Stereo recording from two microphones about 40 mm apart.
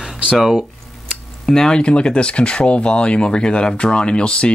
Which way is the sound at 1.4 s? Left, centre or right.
Centre.